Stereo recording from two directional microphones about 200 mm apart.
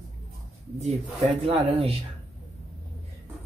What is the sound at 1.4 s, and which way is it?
Speech, 25° right (ahead or behind).